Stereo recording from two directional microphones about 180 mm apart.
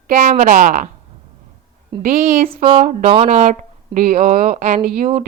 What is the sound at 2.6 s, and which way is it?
Speech, 35° right (ahead or behind).